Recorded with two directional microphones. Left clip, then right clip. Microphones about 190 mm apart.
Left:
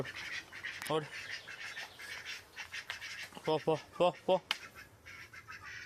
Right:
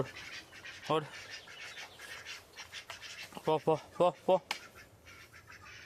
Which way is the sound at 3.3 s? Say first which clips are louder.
Right 2 dB; 20° right (ahead or behind).